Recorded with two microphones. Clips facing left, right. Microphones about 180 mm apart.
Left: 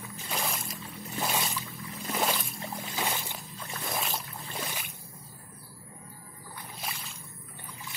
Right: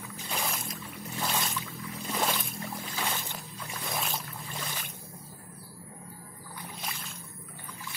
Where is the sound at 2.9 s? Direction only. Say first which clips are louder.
Left 2 dB; 15° left (ahead or behind).